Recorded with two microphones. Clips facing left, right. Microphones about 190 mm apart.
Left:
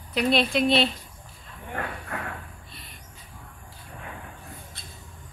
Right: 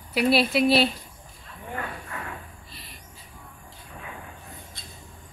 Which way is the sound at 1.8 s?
60° left (ahead or behind).